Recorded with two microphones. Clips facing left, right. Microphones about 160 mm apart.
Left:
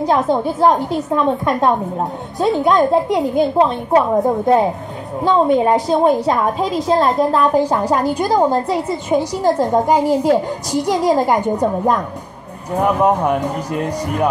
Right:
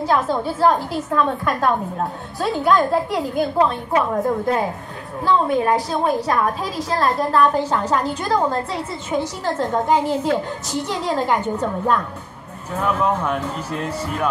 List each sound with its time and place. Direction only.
0.0 s a woman's voice: 20° left (ahead or behind)
11.6 s a woman's voice: 40° left (ahead or behind)
12.9 s a woman's voice: 15° left (ahead or behind)